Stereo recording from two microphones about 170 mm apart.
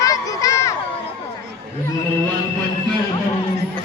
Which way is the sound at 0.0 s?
20° left (ahead or behind).